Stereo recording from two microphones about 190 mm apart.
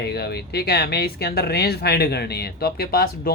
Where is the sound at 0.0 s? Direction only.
55° left (ahead or behind).